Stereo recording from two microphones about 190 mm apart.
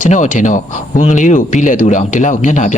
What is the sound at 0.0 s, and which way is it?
A man's voice, 40° left (ahead or behind).